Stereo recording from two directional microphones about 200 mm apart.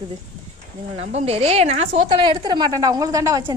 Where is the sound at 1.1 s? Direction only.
30° right (ahead or behind); by 3.5 s 15° right (ahead or behind).